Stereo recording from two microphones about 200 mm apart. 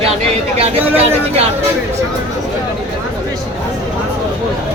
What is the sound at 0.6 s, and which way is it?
Speech, 30° right (ahead or behind).